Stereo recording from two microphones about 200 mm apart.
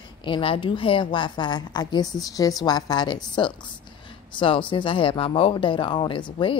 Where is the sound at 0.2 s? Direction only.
25° left (ahead or behind).